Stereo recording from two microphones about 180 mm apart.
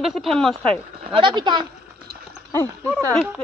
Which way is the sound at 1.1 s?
25° right (ahead or behind).